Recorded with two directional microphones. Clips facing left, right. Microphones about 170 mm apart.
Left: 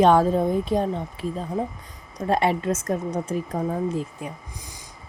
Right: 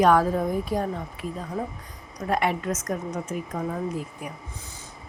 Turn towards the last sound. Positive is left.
turn(degrees=25)  # may be behind; listen again after turning